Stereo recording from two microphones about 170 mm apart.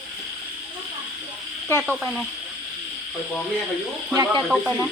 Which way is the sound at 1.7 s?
15° left (ahead or behind).